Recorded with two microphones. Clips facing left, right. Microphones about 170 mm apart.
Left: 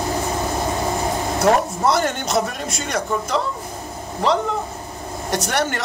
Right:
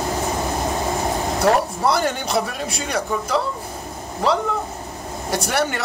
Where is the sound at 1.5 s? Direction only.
5° right (ahead or behind).